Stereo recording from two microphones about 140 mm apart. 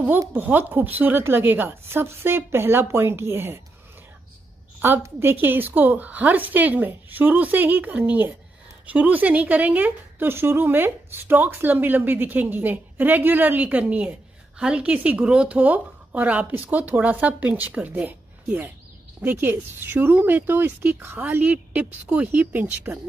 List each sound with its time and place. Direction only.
0.3 s a woman's voice: 10° right (ahead or behind)
4.7 s a woman's voice: 15° right (ahead or behind)